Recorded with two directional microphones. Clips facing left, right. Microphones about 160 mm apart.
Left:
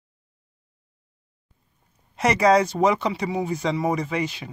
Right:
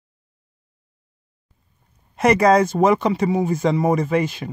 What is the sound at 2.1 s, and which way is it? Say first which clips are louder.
Speech: right 3 dB; 55° right (ahead or behind).